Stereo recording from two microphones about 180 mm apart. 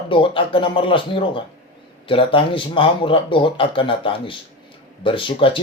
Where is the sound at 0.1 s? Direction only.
30° left (ahead or behind).